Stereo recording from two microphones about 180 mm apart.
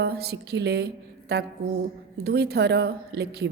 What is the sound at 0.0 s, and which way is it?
A woman's voice, 60° right (ahead or behind).